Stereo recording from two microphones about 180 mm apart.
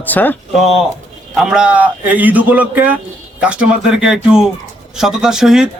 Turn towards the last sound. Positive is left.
turn(degrees=-5)  # may be behind; listen again after turning